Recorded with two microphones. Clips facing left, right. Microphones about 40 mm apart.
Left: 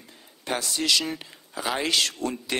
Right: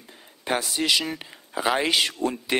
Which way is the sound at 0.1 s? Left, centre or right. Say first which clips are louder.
Right 3 dB; centre.